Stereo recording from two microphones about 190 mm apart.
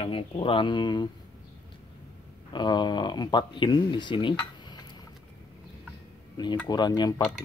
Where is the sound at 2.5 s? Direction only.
25° left (ahead or behind).